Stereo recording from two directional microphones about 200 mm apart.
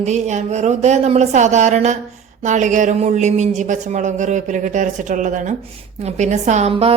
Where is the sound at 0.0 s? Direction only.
35° right (ahead or behind).